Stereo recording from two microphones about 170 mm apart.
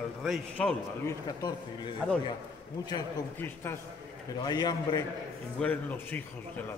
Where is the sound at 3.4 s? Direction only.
15° left (ahead or behind).